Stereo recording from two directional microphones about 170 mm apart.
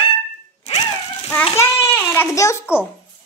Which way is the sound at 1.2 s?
15° left (ahead or behind).